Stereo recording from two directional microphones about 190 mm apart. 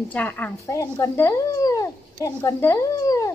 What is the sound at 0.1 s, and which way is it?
Speech, 10° left (ahead or behind).